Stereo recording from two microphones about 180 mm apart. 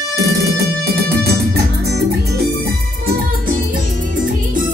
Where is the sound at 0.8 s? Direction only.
60° right (ahead or behind).